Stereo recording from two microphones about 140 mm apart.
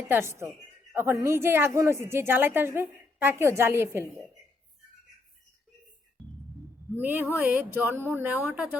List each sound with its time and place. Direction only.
0.1 s a woman's voice: 20° right (ahead or behind)
6.9 s a woman's voice: 15° right (ahead or behind)